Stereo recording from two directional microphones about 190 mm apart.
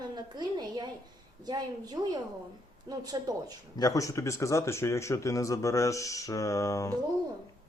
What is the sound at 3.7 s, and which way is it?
Speech, 20° left (ahead or behind).